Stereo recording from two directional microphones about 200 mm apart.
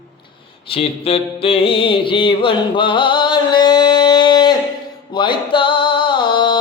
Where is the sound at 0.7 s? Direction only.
30° left (ahead or behind).